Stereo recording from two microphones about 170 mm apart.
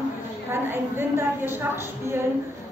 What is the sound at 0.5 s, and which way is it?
A woman's voice, 15° right (ahead or behind).